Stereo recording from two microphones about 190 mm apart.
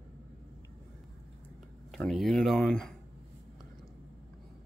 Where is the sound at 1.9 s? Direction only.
Centre (ahead or behind).